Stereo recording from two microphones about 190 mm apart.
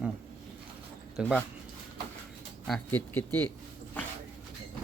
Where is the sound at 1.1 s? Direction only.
5° left (ahead or behind).